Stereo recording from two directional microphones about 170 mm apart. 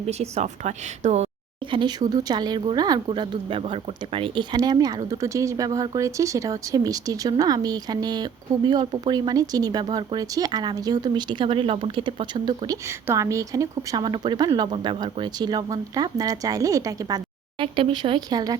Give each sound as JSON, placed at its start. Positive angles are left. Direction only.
{"t": 0.1, "sound": "speech", "side_deg": -40}
{"t": 1.7, "sound": "speech", "side_deg": -25}
{"t": 17.6, "sound": "speech", "side_deg": -30}